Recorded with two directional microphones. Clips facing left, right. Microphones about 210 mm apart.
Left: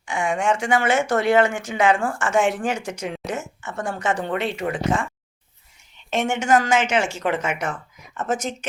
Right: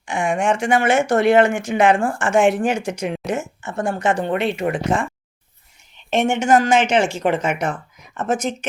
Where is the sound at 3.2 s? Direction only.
Centre (ahead or behind).